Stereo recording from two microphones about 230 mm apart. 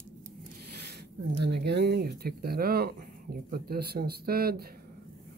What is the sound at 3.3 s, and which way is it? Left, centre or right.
Speech, right.